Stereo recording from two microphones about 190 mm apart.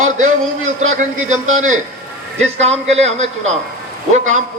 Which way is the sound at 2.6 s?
35° right (ahead or behind).